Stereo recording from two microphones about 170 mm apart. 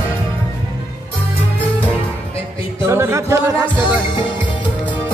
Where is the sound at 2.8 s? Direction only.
15° right (ahead or behind).